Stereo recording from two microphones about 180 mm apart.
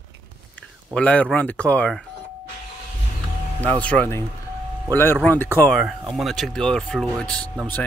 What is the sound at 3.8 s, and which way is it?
Speech, 10° left (ahead or behind).